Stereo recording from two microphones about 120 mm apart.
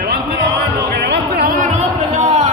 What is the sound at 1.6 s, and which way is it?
Music, 75° right (ahead or behind).